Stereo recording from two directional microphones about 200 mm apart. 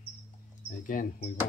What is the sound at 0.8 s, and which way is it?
Speech, 40° left (ahead or behind).